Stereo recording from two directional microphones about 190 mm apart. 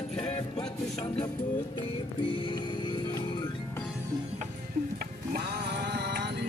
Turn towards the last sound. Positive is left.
turn(degrees=-60)  # may be behind; listen again after turning